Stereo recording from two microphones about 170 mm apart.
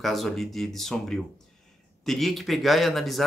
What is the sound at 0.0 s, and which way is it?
Speech, centre (ahead or behind).